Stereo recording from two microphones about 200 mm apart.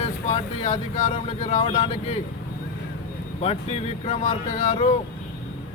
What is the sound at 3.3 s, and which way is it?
Speech, 30° left (ahead or behind).